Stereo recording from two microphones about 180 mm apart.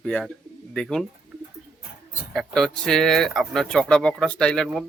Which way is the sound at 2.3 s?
5° left (ahead or behind).